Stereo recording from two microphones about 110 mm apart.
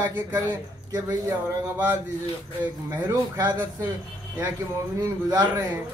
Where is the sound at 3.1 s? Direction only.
35° right (ahead or behind).